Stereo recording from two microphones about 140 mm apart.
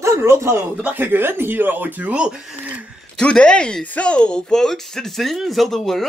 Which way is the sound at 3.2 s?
5° left (ahead or behind).